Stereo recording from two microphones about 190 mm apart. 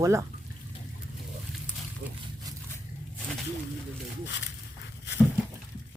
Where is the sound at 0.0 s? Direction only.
15° right (ahead or behind).